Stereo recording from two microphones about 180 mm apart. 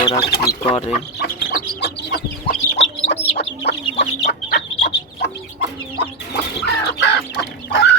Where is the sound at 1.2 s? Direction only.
65° left (ahead or behind).